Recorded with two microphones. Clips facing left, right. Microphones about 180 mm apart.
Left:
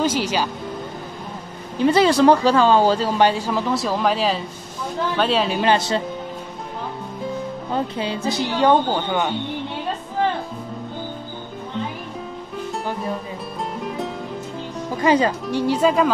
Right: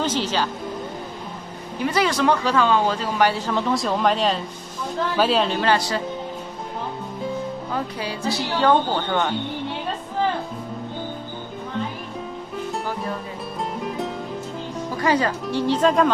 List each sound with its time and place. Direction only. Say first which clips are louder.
0.0 s speech: left 2 dB; 10° left (ahead or behind)
1.8 s speech: left 6 dB; 30° left (ahead or behind)
3.3 s speech: left 1 dB; 5° left (ahead or behind)
5.6 s speech: left 2 dB; 20° left (ahead or behind)
7.7 s speech: left 7 dB; 20° left (ahead or behind)
13.7 s music: left 1 dB; centre (ahead or behind)
15.0 s speech: left 4 dB; 20° left (ahead or behind)